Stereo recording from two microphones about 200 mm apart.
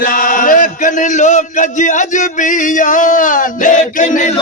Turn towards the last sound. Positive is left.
turn(degrees=40)  # may be behind; listen again after turning